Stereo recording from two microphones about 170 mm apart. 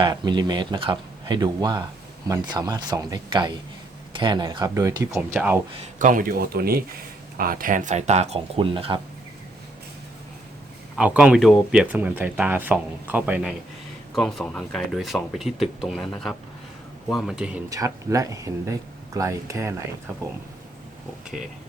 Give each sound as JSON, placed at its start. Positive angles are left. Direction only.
{"t": 0.0, "sound": "speech", "side_deg": -25}
{"t": 5.3, "sound": "speech", "side_deg": -10}
{"t": 5.8, "sound": "speech", "side_deg": -50}
{"t": 10.9, "sound": "speech", "side_deg": -5}
{"t": 14.2, "sound": "speech", "side_deg": 0}
{"t": 17.7, "sound": "speech", "side_deg": -20}
{"t": 21.2, "sound": "speech", "side_deg": -5}